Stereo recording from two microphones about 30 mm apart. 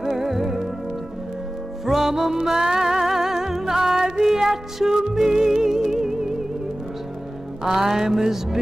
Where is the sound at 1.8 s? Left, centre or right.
Centre.